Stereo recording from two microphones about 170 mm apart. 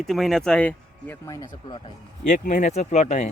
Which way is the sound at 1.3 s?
20° left (ahead or behind).